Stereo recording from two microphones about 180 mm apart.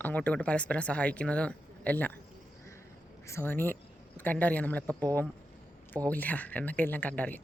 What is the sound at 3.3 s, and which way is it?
Speech, 10° left (ahead or behind).